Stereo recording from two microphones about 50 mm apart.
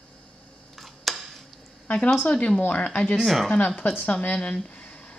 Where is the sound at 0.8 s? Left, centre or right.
Centre.